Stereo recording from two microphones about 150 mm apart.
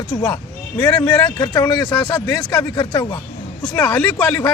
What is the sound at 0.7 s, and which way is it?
Speech, 10° left (ahead or behind).